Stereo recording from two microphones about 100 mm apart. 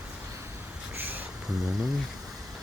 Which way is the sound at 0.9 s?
20° right (ahead or behind).